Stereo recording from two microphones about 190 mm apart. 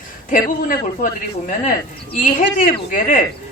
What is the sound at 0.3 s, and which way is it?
Speech, 45° left (ahead or behind).